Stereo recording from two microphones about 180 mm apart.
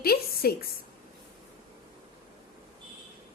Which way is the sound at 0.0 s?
60° left (ahead or behind).